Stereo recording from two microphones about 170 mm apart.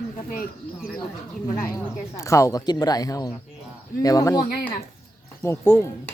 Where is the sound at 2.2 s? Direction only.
20° left (ahead or behind).